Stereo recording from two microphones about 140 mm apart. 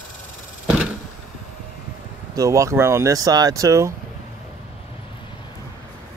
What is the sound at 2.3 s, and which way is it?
Speech, 25° right (ahead or behind).